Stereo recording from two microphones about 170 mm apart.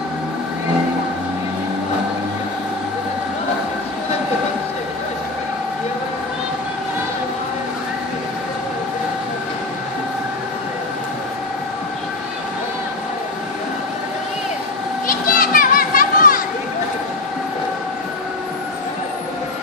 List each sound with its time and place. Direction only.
15.0 s children playing: 55° left (ahead or behind)